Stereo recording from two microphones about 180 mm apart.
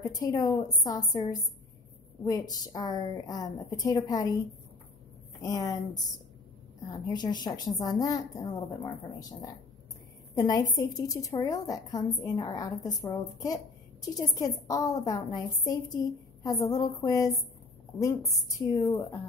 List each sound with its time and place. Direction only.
0.0 s a woman's voice: 20° left (ahead or behind)
5.4 s a woman's voice: 20° left (ahead or behind)